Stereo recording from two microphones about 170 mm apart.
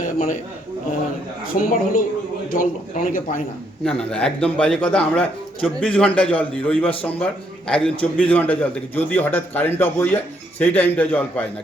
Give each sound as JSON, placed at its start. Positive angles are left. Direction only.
{"t": 0.0, "sound": "a sound", "side_deg": 50}
{"t": 1.7, "sound": "a man's voice", "side_deg": 55}
{"t": 3.8, "sound": "a man's voice", "side_deg": 5}